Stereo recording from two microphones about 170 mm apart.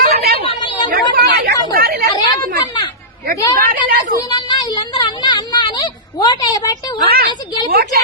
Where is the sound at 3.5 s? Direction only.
55° right (ahead or behind).